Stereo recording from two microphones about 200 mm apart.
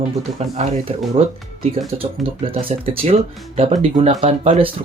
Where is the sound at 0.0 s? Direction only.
30° right (ahead or behind).